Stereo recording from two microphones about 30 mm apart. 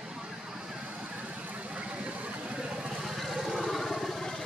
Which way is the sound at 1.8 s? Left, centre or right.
Right.